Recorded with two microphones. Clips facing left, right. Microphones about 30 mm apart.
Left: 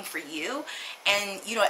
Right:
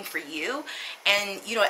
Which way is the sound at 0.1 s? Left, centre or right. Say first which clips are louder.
Right 2 dB; centre.